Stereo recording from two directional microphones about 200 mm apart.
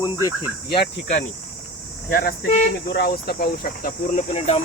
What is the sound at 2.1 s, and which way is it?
Speech, 50° left (ahead or behind).